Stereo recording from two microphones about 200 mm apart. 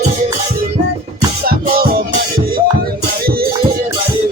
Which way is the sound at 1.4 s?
50° right (ahead or behind).